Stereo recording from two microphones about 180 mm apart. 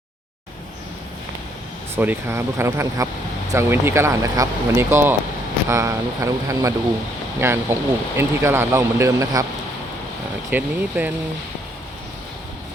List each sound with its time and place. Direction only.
2.0 s speech: 10° right (ahead or behind)
10.5 s speech: 10° right (ahead or behind)